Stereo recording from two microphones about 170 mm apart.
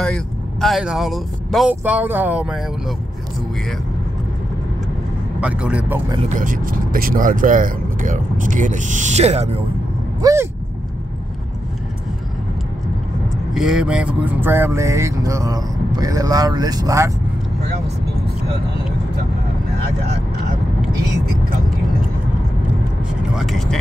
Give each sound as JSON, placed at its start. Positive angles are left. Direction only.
{"t": 0.0, "sound": "speech", "side_deg": 5}
{"t": 5.4, "sound": "vehicle", "side_deg": -5}
{"t": 6.2, "sound": "speech", "side_deg": -50}
{"t": 10.2, "sound": "vehicle", "side_deg": -15}
{"t": 13.5, "sound": "vehicle", "side_deg": 0}
{"t": 23.3, "sound": "speech", "side_deg": 0}